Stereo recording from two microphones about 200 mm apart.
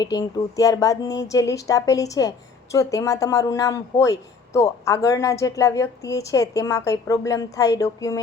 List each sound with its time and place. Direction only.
0.0 s speech: 20° left (ahead or behind)